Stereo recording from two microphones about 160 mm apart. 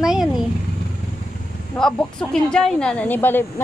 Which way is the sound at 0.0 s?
5° right (ahead or behind).